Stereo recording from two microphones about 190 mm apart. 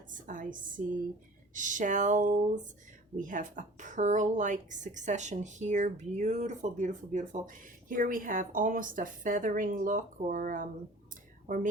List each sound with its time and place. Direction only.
0.1 s a woman's voice: 45° right (ahead or behind)